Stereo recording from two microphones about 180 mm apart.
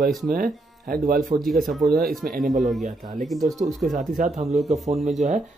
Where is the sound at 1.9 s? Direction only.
60° right (ahead or behind).